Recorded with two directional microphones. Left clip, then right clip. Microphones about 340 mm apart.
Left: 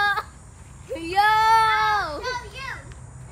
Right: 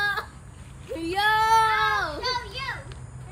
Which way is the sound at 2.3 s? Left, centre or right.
Right.